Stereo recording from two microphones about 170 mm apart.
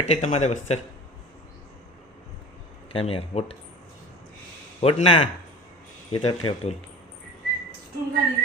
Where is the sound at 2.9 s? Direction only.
35° left (ahead or behind).